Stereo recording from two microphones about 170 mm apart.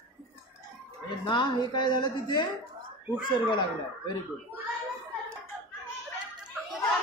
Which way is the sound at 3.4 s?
25° left (ahead or behind).